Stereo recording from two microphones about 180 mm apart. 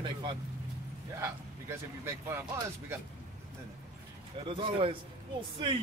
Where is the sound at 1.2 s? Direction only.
15° right (ahead or behind).